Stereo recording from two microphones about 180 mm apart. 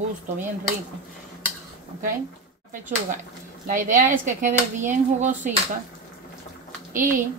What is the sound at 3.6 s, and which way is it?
Speech, 45° right (ahead or behind).